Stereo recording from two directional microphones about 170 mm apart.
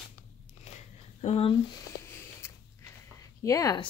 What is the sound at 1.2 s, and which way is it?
Speech, 30° left (ahead or behind).